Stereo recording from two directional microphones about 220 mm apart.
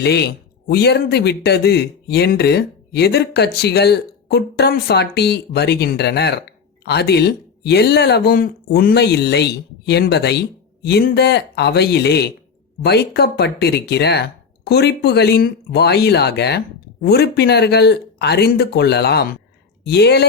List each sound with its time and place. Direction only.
0.0 s speech: 50° left (ahead or behind)